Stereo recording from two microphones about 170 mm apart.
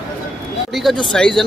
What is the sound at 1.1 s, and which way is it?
Speech, 5° left (ahead or behind).